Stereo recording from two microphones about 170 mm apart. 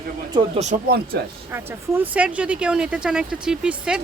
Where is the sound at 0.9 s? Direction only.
65° right (ahead or behind).